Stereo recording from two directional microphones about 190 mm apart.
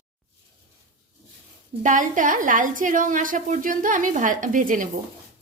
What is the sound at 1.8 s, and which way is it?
A woman's voice, 45° right (ahead or behind).